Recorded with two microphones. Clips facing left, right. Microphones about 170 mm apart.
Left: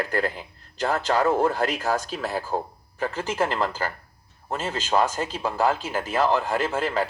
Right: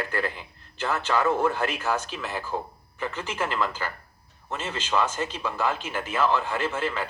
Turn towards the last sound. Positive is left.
turn(degrees=40)  # may be behind; listen again after turning